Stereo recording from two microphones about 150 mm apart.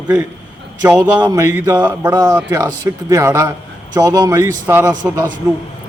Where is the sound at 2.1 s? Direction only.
25° right (ahead or behind).